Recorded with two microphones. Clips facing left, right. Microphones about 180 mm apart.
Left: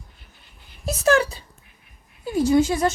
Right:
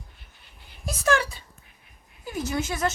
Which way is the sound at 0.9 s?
40° left (ahead or behind).